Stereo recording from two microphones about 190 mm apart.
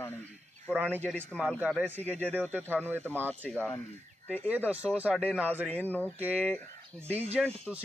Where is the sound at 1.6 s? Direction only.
10° right (ahead or behind).